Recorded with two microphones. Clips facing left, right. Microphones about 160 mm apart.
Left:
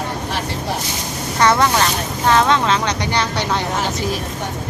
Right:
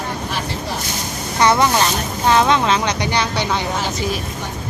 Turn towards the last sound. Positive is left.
turn(degrees=-10)  # may be behind; listen again after turning